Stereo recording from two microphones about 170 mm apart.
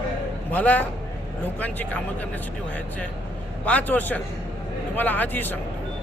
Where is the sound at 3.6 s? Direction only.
10° left (ahead or behind).